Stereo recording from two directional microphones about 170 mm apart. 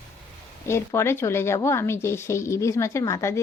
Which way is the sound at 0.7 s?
15° left (ahead or behind).